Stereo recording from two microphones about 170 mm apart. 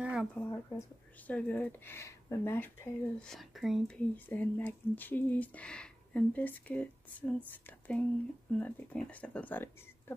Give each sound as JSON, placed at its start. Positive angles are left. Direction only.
{"t": 0.0, "sound": "a sound", "side_deg": -5}
{"t": 0.5, "sound": "speech", "side_deg": 20}
{"t": 1.2, "sound": "speech", "side_deg": 10}